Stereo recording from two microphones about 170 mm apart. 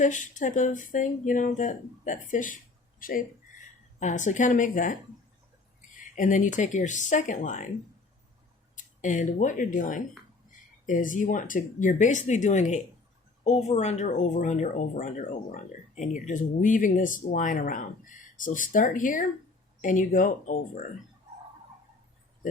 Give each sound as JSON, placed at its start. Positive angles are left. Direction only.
{"t": 0.0, "sound": "speech", "side_deg": 50}
{"t": 6.1, "sound": "speech", "side_deg": 50}
{"t": 8.7, "sound": "speech", "side_deg": 50}